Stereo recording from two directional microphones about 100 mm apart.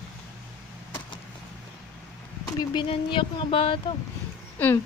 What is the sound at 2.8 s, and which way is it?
Speech, 65° left (ahead or behind).